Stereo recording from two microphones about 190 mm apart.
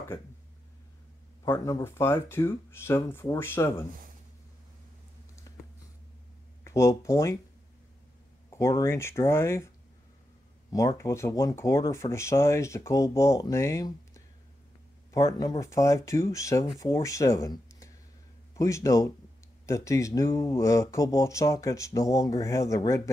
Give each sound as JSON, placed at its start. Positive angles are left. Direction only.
{"t": 1.4, "sound": "speech", "side_deg": 15}
{"t": 6.6, "sound": "speech", "side_deg": 15}
{"t": 8.5, "sound": "speech", "side_deg": 15}
{"t": 11.0, "sound": "a man's voice", "side_deg": 15}